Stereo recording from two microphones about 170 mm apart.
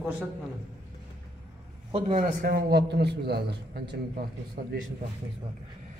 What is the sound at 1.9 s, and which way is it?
A man's voice, 45° right (ahead or behind).